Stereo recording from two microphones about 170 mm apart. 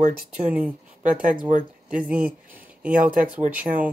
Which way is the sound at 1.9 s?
10° right (ahead or behind).